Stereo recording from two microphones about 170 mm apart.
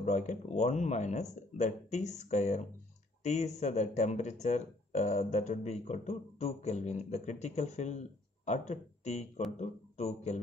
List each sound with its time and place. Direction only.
0.0 s speech: 45° left (ahead or behind)